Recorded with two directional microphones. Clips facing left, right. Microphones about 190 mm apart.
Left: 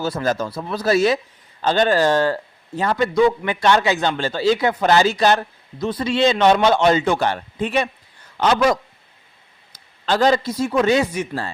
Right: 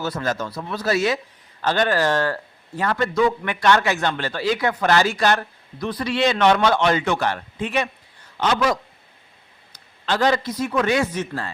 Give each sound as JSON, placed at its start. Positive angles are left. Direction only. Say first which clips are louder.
{"t": 0.0, "sound": "speech", "louder": "left 3 dB", "side_deg": 30}
{"t": 3.4, "sound": "speech", "louder": "left 2 dB", "side_deg": 25}
{"t": 10.1, "sound": "speech", "louder": "left 3 dB", "side_deg": 30}
{"t": 11.0, "sound": "speech", "louder": "left 1 dB", "side_deg": 15}